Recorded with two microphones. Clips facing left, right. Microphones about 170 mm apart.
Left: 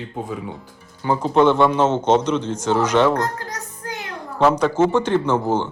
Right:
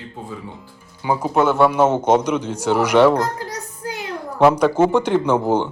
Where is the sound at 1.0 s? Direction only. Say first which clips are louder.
Left 2 dB; 10° right (ahead or behind).